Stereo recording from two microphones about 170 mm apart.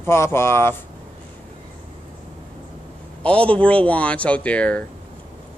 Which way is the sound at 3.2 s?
5° left (ahead or behind).